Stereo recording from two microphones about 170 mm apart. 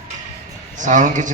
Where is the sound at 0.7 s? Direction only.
45° right (ahead or behind).